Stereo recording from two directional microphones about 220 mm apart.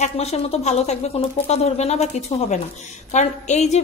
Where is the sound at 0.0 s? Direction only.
30° left (ahead or behind).